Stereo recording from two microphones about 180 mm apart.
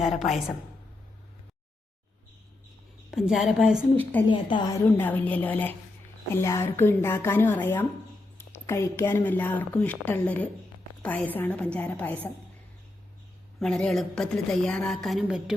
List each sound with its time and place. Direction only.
0.0 s a woman's voice: centre (ahead or behind)
3.1 s a woman's voice: centre (ahead or behind)
3.9 s speech: 10° left (ahead or behind)
4.3 s a woman's voice: 25° left (ahead or behind)
4.9 s speech: 10° left (ahead or behind)
13.6 s a woman's voice: 5° left (ahead or behind)